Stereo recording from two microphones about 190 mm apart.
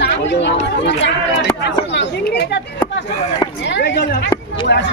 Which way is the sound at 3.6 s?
65° left (ahead or behind).